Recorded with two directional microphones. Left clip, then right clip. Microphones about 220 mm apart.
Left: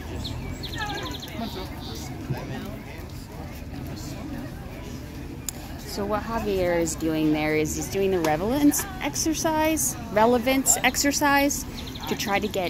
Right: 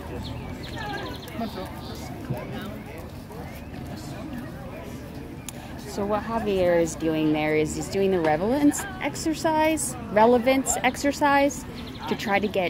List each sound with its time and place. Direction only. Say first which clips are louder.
5.9 s speech: right 1 dB; 5° right (ahead or behind)